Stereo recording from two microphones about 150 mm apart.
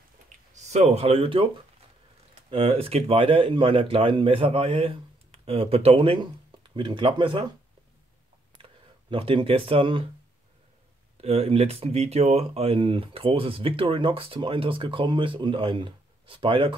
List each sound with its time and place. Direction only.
0.6 s speech: 50° right (ahead or behind)
2.5 s speech: 40° right (ahead or behind)
9.1 s speech: 35° right (ahead or behind)
11.1 s speech: 40° right (ahead or behind)